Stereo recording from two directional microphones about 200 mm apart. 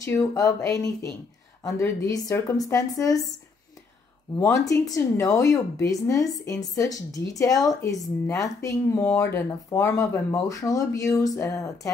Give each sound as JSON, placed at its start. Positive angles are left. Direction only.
{"t": 0.0, "sound": "a woman's voice", "side_deg": 15}
{"t": 4.4, "sound": "a woman's voice", "side_deg": 15}